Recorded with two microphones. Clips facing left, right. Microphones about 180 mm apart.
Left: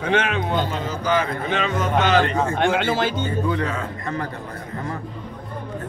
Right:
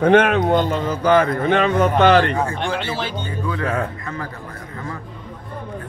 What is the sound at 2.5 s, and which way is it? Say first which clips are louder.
Speech: left 4 dB; 50° left (ahead or behind).